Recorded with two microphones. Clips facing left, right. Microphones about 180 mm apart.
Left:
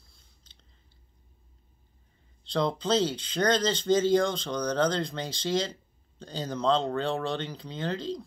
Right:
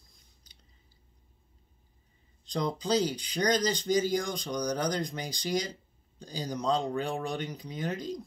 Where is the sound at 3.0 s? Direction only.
15° right (ahead or behind).